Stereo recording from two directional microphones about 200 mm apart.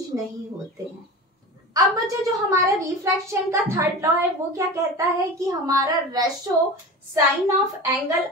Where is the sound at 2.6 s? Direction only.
15° right (ahead or behind).